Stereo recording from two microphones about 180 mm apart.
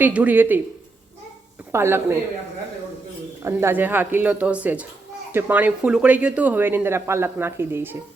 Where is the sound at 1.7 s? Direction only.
15° right (ahead or behind).